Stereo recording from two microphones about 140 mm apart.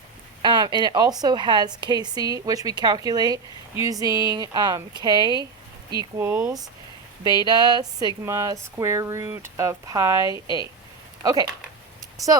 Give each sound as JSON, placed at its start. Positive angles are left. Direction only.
{"t": 0.4, "sound": "a woman's voice", "side_deg": -30}
{"t": 6.1, "sound": "speech", "side_deg": -15}
{"t": 7.4, "sound": "a woman's voice", "side_deg": -30}